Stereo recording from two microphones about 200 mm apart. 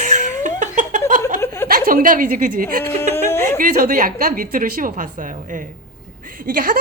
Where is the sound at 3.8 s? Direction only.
45° right (ahead or behind).